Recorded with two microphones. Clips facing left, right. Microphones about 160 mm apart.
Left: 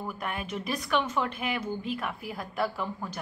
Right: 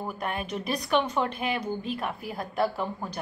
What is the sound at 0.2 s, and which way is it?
A woman's voice, 25° right (ahead or behind).